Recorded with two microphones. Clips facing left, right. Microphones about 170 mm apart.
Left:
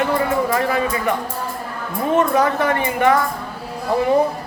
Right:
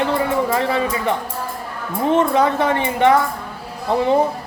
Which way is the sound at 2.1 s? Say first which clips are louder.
Even; 25° right (ahead or behind).